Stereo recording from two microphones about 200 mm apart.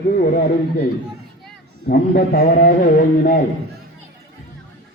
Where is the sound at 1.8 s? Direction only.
50° left (ahead or behind).